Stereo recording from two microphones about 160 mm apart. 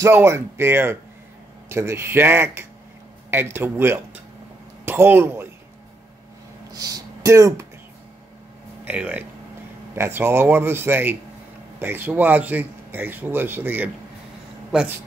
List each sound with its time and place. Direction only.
0.0 s speech: 15° right (ahead or behind)
6.7 s speech: 20° right (ahead or behind)
8.8 s speech: 10° right (ahead or behind)